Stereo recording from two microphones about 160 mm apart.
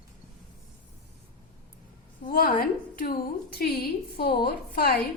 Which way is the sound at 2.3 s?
60° left (ahead or behind).